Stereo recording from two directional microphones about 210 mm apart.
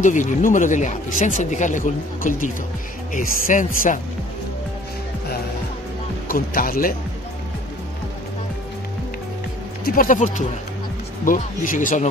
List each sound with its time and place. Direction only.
0.0 s speech: 35° left (ahead or behind)
6.2 s speech: 45° left (ahead or behind)
9.8 s speech: 40° left (ahead or behind)